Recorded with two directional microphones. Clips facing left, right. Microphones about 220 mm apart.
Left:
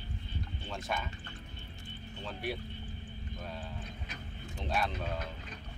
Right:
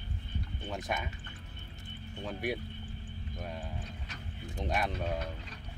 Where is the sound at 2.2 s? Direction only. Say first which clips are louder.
Right 3 dB; 15° right (ahead or behind).